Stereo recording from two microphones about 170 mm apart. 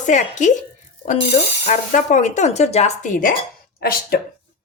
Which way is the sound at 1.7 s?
45° left (ahead or behind).